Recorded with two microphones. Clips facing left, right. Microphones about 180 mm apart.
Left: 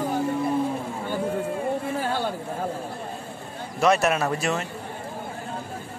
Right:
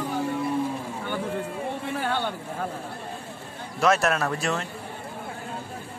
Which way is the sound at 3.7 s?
Centre (ahead or behind).